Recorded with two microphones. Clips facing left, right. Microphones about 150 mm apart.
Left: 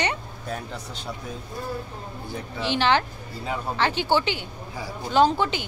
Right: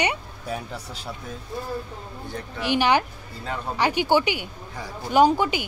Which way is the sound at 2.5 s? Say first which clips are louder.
Right 1 dB; 15° right (ahead or behind).